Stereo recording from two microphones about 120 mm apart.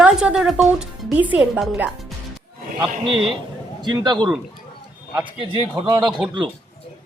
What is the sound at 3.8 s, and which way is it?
Speech, 35° right (ahead or behind).